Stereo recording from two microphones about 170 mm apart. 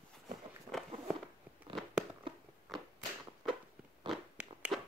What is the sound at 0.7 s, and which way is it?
Walk, centre (ahead or behind).